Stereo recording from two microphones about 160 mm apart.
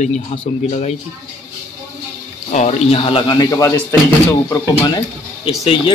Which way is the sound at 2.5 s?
45° left (ahead or behind).